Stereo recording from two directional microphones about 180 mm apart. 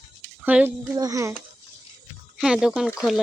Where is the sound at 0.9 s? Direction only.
20° right (ahead or behind).